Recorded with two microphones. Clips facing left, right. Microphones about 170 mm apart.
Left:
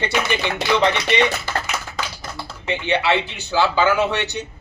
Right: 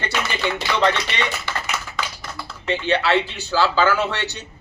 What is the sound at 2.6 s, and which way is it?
Speech, 15° left (ahead or behind).